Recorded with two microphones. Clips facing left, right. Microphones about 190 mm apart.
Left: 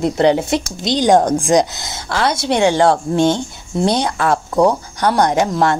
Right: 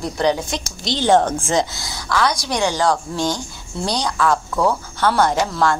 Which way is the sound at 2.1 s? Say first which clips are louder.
Left 3 dB; 25° left (ahead or behind).